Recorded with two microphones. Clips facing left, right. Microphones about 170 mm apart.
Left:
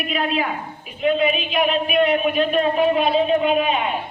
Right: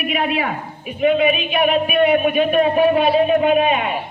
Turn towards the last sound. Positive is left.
turn(degrees=-60)  # may be behind; listen again after turning